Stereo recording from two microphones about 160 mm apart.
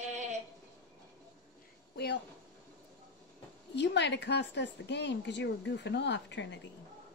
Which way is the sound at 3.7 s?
90° left.